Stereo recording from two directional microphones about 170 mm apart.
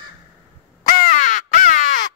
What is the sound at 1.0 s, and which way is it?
Crow, 50° left (ahead or behind).